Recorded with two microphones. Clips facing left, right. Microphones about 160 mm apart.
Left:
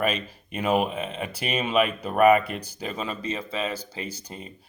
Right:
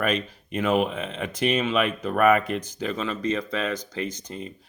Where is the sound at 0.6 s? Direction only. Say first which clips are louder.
Right 1 dB; 35° left (ahead or behind).